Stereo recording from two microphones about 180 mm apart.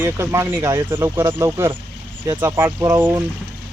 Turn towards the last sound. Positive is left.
turn(degrees=-15)  # may be behind; listen again after turning